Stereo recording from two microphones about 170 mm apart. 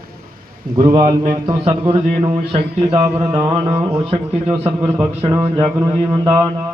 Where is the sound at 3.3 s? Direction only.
35° right (ahead or behind).